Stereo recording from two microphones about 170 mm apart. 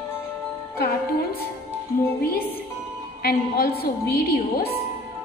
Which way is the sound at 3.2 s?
65° left (ahead or behind).